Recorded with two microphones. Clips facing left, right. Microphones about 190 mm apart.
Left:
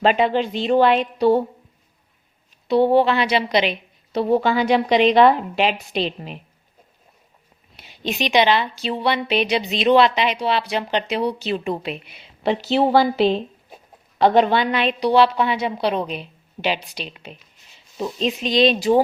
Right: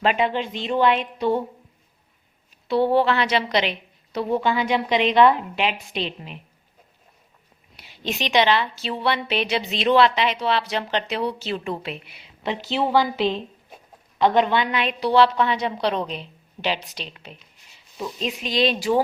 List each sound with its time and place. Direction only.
0.0 s a woman's voice: 35° left (ahead or behind)
2.6 s a woman's voice: 15° left (ahead or behind)
4.1 s a woman's voice: 30° left (ahead or behind)
7.8 s a woman's voice: 15° left (ahead or behind)
12.4 s a woman's voice: 35° left (ahead or behind)
15.0 s a woman's voice: 15° left (ahead or behind)